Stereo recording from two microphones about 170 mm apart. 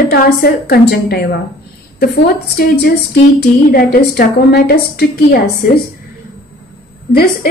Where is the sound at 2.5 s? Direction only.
60° left (ahead or behind).